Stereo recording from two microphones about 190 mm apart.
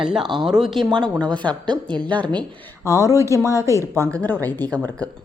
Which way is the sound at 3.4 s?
15° left (ahead or behind).